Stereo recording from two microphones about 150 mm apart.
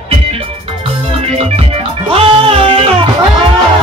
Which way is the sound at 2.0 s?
40° right (ahead or behind).